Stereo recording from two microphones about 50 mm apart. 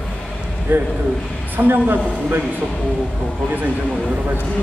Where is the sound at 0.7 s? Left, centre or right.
Right.